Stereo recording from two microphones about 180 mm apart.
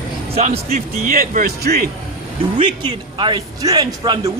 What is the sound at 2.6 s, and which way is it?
A man's voice, 25° right (ahead or behind).